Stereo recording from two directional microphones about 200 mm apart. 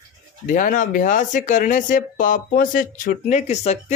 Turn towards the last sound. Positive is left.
turn(degrees=35)  # may be behind; listen again after turning